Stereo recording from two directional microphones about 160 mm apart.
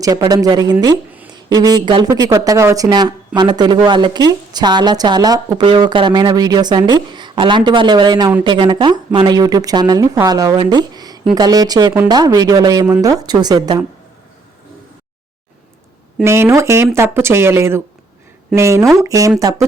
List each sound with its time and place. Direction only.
0.0 s speech: 25° right (ahead or behind)
16.2 s speech: 15° right (ahead or behind)